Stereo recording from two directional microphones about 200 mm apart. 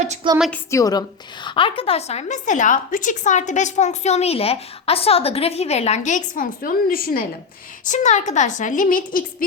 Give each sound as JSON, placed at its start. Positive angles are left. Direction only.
{"t": 0.3, "sound": "a woman's voice", "side_deg": 0}
{"t": 0.7, "sound": "a woman's voice", "side_deg": 15}